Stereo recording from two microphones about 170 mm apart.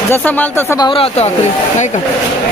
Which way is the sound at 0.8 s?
35° left (ahead or behind).